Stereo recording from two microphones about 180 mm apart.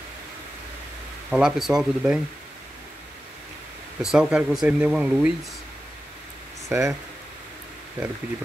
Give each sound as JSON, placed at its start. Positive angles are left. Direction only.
{"t": 1.3, "sound": "speech", "side_deg": -5}
{"t": 4.0, "sound": "speech", "side_deg": -5}
{"t": 6.7, "sound": "speech", "side_deg": -15}